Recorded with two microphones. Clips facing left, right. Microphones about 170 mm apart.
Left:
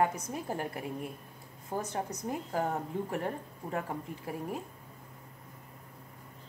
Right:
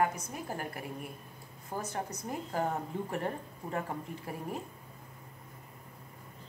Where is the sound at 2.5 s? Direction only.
10° left (ahead or behind).